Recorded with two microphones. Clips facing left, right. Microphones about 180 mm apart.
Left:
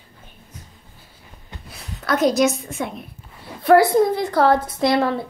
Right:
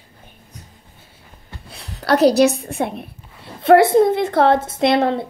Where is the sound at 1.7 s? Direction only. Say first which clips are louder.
Right 2 dB; 35° right (ahead or behind).